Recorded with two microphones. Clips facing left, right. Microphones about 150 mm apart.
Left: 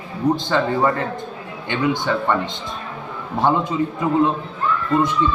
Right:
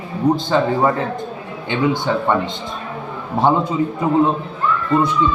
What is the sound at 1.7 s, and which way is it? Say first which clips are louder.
A man's voice: right 2 dB; 15° right (ahead or behind).